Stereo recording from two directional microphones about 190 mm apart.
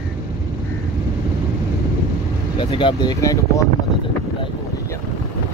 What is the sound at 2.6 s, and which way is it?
Speech, 25° left (ahead or behind).